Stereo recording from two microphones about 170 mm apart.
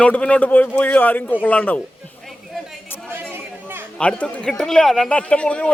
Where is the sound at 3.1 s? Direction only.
15° right (ahead or behind).